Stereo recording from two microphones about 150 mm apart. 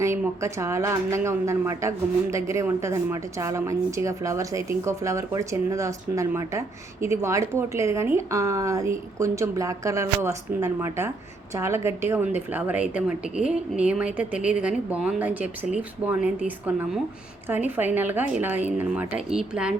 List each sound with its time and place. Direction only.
0.4 s speech: 20° right (ahead or behind)